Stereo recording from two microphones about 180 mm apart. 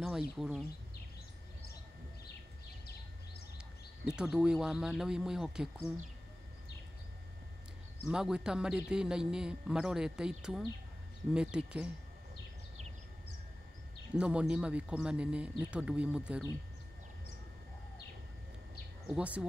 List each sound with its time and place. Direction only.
0.0 s speech: 5° right (ahead or behind)
4.0 s a man's voice: 5° right (ahead or behind)
8.1 s a man's voice: 5° right (ahead or behind)
14.1 s speech: 5° right (ahead or behind)
19.0 s a man's voice: 5° right (ahead or behind)